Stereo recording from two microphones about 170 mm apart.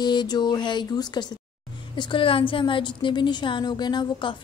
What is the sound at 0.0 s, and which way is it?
A woman's voice, 25° left (ahead or behind).